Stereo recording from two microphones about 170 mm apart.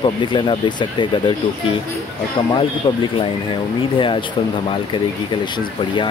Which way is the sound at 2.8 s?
30° left (ahead or behind).